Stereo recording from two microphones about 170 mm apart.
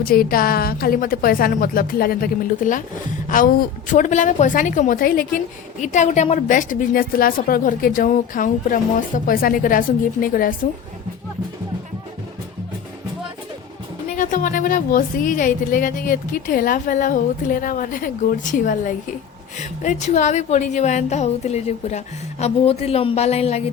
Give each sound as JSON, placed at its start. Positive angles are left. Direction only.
{"t": 0.0, "sound": "a woman's voice", "side_deg": 60}
{"t": 14.2, "sound": "a woman's voice", "side_deg": 50}